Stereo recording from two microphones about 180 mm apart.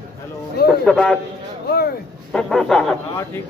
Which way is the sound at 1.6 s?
65° left (ahead or behind).